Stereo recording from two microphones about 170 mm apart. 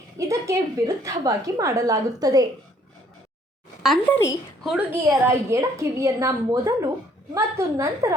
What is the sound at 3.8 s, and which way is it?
A woman's voice, centre (ahead or behind).